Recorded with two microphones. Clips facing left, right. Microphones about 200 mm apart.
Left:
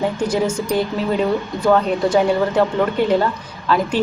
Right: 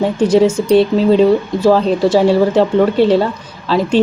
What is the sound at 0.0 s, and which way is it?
Speech, 25° right (ahead or behind).